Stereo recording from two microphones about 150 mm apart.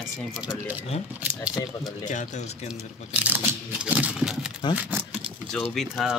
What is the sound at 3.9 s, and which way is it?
Horse, 5° right (ahead or behind).